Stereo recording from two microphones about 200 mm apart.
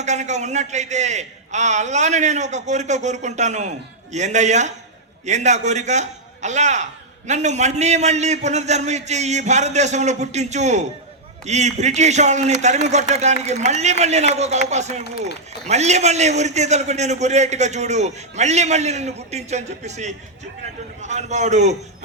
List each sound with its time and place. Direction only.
0.0 s a man's voice: 35° right (ahead or behind)